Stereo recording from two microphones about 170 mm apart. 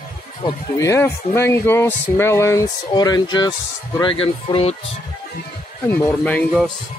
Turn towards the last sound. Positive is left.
turn(degrees=10)  # may be behind; listen again after turning